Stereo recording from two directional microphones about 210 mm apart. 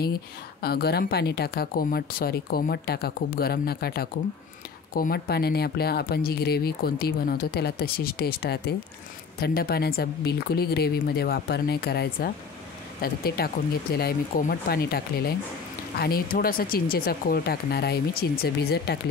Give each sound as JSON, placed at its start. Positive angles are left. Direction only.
{"t": 0.6, "sound": "speech", "side_deg": 50}